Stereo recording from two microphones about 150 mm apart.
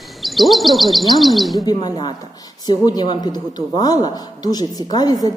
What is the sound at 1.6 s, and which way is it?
A woman's voice, 30° left (ahead or behind).